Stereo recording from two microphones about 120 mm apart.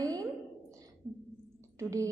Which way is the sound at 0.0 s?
30° right (ahead or behind).